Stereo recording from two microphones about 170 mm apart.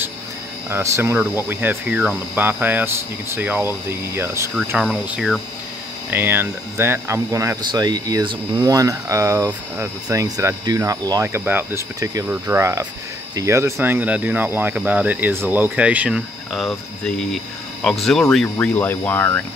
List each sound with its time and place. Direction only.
0.7 s speech: 15° right (ahead or behind); by 19.4 s 10° left (ahead or behind)